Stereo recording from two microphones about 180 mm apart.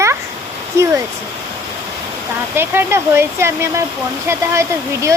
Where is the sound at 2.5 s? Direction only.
15° right (ahead or behind).